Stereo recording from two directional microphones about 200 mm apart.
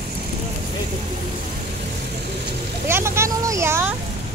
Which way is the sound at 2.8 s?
10° right (ahead or behind).